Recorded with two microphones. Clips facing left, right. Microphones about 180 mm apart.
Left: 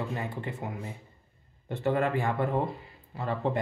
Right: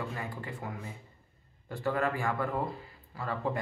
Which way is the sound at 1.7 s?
25° left (ahead or behind).